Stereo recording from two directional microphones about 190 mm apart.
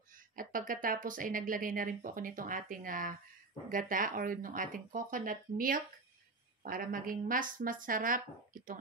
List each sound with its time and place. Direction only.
0.1 s speech: 45° right (ahead or behind)